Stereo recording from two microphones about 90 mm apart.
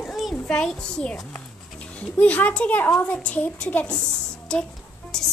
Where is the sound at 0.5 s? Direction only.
10° left (ahead or behind).